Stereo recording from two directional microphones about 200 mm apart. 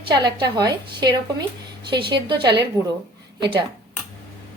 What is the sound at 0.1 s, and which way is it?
A woman's voice, 20° right (ahead or behind).